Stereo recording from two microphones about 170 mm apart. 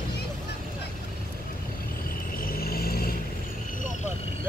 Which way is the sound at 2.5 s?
60° left (ahead or behind).